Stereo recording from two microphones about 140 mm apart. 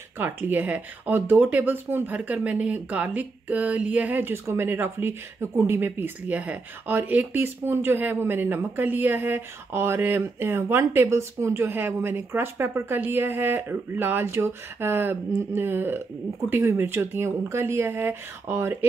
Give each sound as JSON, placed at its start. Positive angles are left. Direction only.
{"t": 0.2, "sound": "speech", "side_deg": -10}